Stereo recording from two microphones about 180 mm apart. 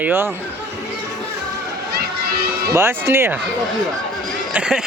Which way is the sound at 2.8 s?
15° right (ahead or behind).